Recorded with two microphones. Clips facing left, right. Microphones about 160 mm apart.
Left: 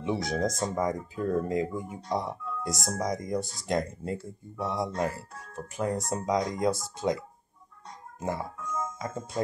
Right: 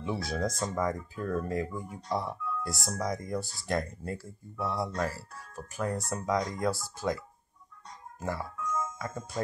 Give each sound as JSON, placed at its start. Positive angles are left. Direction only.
{"t": 0.0, "sound": "speech", "side_deg": 20}